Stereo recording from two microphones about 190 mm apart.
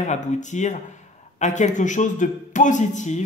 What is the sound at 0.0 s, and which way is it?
Speech, 40° left (ahead or behind).